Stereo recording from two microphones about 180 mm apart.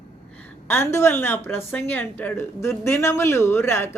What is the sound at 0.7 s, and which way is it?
A woman's voice, 15° left (ahead or behind).